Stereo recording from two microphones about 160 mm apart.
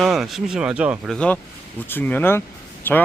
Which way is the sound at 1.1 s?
5° left (ahead or behind).